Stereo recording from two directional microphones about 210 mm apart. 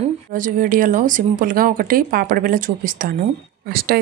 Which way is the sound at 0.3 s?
40° right (ahead or behind).